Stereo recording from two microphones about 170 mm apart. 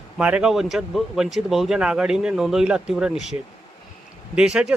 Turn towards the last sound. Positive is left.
turn(degrees=-5)  # may be behind; listen again after turning